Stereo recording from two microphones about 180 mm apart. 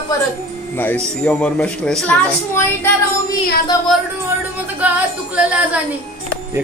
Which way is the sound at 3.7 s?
15° left (ahead or behind).